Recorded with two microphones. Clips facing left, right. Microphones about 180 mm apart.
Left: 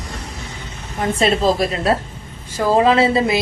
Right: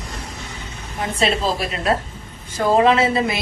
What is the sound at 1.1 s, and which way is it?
A woman's voice, 40° left (ahead or behind).